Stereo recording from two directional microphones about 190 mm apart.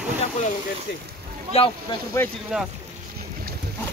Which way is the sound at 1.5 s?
30° left (ahead or behind).